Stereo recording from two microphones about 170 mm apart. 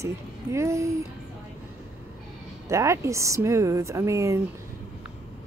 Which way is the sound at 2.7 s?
15° right (ahead or behind).